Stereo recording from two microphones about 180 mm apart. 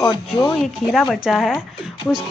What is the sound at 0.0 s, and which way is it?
Speech, 25° left (ahead or behind).